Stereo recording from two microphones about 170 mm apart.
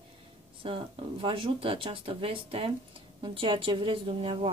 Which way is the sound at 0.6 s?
35° right (ahead or behind).